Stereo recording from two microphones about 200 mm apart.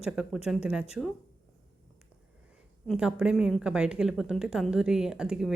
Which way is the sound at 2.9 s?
5° right (ahead or behind).